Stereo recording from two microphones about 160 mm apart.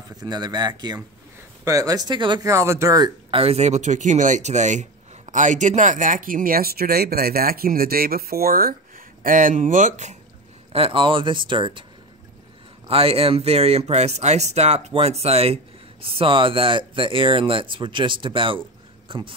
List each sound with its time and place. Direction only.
0.2 s speech: 25° right (ahead or behind)
3.3 s speech: 35° right (ahead or behind)
10.7 s speech: 35° right (ahead or behind)
12.8 s speech: 40° right (ahead or behind)